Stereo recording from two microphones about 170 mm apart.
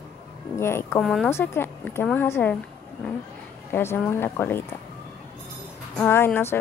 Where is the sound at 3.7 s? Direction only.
15° left (ahead or behind).